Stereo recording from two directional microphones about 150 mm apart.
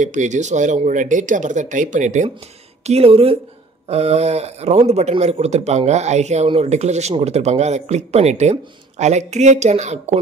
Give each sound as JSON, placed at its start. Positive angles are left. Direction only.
{"t": 0.0, "sound": "speech", "side_deg": -55}
{"t": 2.9, "sound": "a man's voice", "side_deg": -40}